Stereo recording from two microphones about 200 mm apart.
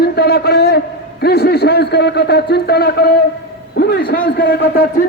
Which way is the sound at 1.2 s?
55° left (ahead or behind).